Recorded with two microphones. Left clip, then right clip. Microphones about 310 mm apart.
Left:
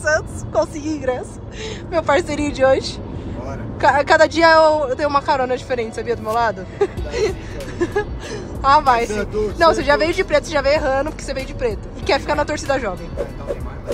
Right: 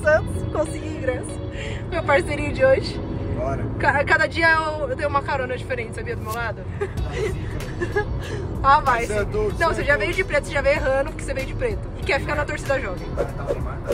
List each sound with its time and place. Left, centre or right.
0.0 s music: centre
0.8 s a woman's voice: left
1.9 s speech: centre
3.8 s speech: centre